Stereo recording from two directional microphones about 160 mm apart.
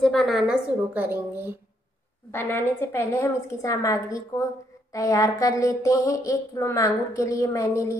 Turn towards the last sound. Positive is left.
turn(degrees=20)  # may be behind; listen again after turning